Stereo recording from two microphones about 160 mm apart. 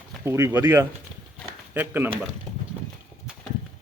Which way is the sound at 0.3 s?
15° right (ahead or behind).